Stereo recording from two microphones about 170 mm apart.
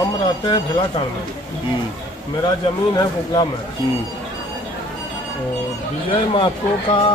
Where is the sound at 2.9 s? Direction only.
25° left (ahead or behind).